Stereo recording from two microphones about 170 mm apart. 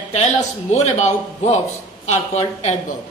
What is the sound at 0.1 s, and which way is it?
A man's voice, 45° left (ahead or behind).